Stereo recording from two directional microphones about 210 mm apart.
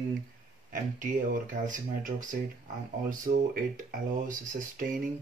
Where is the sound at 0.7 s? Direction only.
35° right (ahead or behind).